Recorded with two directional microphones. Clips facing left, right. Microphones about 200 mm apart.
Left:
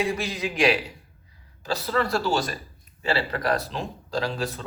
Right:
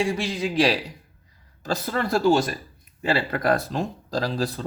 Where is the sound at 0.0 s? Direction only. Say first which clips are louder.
Right 2 dB; 30° right (ahead or behind).